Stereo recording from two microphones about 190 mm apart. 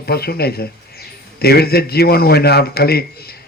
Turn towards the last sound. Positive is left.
turn(degrees=55)  # may be behind; listen again after turning